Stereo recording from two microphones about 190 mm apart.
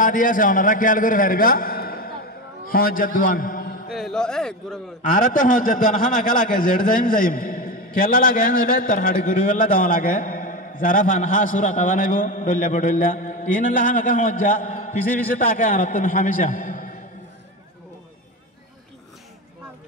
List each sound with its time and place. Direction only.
0.0 s a man's voice: 45° left (ahead or behind)
3.9 s speech: centre (ahead or behind)
5.2 s speech: 45° left (ahead or behind)